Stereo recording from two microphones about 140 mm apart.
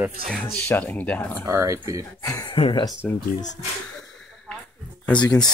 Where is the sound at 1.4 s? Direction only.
20° right (ahead or behind).